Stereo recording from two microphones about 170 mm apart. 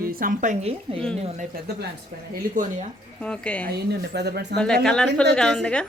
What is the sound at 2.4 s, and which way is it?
Speech, 55° right (ahead or behind).